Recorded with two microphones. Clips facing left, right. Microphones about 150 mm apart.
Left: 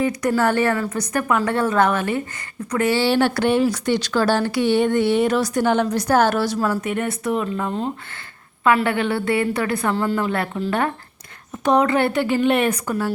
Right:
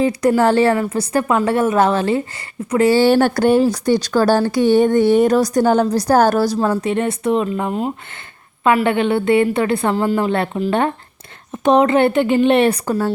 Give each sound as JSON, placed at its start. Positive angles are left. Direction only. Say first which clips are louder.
{"t": 0.3, "sound": "a woman's voice", "louder": "right 4 dB", "side_deg": -25}
{"t": 2.9, "sound": "a woman's voice", "louder": "right 4 dB", "side_deg": -45}